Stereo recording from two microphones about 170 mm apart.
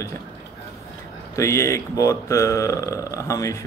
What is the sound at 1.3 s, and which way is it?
Speech, 15° left (ahead or behind).